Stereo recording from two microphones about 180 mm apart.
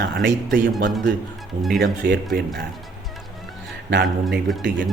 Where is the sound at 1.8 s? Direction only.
60° right (ahead or behind).